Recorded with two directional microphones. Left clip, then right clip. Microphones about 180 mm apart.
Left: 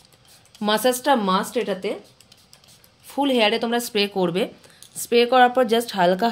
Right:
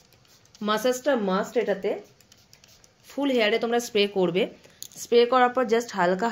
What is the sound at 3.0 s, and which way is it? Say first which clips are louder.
A woman's voice: left 4 dB; 30° left (ahead or behind).